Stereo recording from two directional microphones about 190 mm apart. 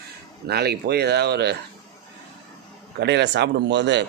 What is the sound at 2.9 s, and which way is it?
Speech, 65° right (ahead or behind).